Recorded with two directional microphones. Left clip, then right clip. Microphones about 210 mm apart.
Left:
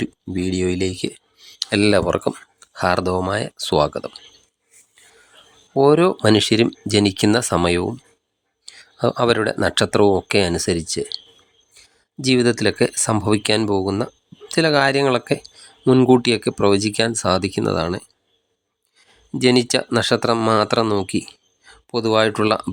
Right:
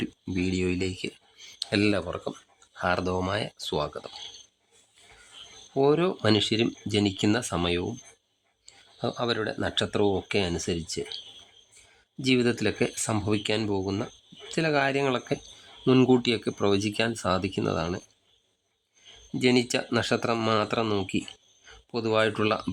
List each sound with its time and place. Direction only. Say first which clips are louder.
0.3 s speech: left 7 dB; 15° left (ahead or behind)
5.7 s speech: left 9 dB; 30° left (ahead or behind)
12.2 s speech: left 8 dB; 25° left (ahead or behind)
19.4 s speech: left 8 dB; 25° left (ahead or behind)